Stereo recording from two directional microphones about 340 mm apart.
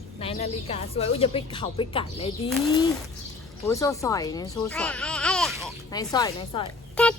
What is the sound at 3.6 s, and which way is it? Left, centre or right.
A woman's voice, centre.